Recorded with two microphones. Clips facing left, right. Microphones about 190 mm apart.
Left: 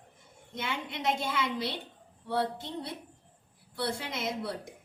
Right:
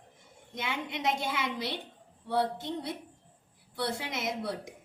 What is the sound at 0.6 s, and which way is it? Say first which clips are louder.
Speech: right 1 dB; 20° right (ahead or behind).